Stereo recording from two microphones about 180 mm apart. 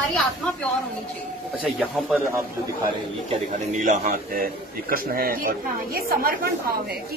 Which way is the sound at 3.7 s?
45° right (ahead or behind).